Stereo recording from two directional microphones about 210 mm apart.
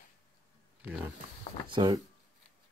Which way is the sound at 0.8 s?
5° right (ahead or behind).